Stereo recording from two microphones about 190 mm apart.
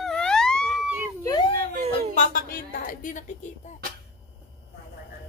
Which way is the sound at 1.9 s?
40° left (ahead or behind).